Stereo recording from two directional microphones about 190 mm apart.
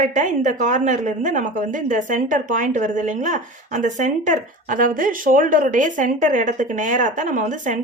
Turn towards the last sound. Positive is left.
turn(degrees=-40)  # may be behind; listen again after turning